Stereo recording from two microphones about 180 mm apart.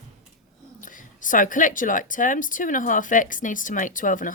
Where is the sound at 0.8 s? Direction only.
45° left (ahead or behind).